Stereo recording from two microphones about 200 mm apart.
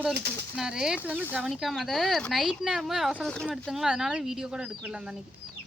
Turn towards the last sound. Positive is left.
turn(degrees=-5)  # may be behind; listen again after turning